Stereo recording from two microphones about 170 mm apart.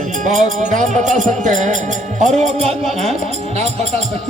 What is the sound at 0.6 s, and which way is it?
Speech, 45° right (ahead or behind).